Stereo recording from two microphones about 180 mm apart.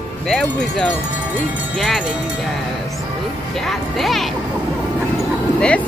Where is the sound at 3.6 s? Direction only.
Centre (ahead or behind).